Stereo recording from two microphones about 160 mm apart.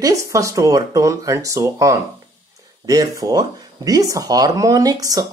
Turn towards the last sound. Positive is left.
turn(degrees=-25)  # may be behind; listen again after turning